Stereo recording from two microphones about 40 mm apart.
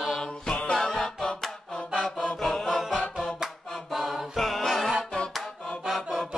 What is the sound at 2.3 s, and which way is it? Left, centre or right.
Chant, centre.